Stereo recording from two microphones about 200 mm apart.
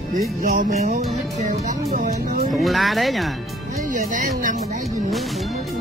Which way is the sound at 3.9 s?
40° right (ahead or behind).